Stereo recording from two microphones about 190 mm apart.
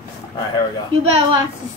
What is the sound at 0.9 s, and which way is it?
Speech, 25° right (ahead or behind).